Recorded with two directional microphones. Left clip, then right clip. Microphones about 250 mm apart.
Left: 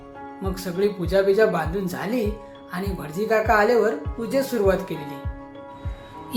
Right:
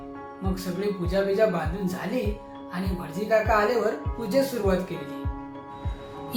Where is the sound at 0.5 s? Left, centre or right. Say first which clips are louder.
Left 6 dB; centre.